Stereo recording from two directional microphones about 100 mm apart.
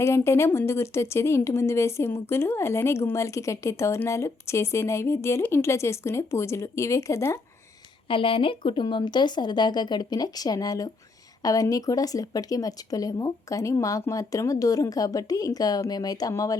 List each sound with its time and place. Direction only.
0.0 s speech: 30° left (ahead or behind)
8.0 s a woman's voice: 60° left (ahead or behind); by 16.6 s 35° left (ahead or behind)